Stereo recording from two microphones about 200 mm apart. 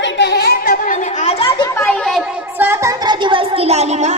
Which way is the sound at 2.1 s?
5° right (ahead or behind).